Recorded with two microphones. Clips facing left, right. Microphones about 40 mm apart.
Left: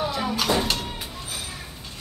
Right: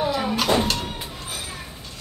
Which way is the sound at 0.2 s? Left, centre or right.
Centre.